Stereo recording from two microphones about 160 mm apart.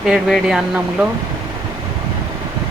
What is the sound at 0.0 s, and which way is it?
Speech, 5° right (ahead or behind).